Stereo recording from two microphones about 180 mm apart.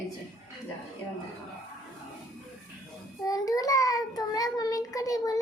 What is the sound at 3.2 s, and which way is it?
A child's voice, 20° left (ahead or behind).